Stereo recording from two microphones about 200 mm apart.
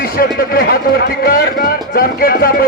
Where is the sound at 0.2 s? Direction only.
50° left (ahead or behind).